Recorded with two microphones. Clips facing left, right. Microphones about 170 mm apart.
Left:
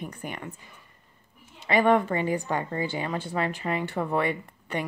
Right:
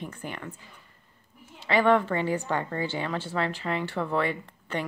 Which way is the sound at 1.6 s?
15° left (ahead or behind).